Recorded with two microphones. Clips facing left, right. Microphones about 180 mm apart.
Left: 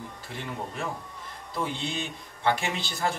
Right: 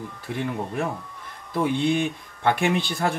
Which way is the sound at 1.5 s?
55° right (ahead or behind).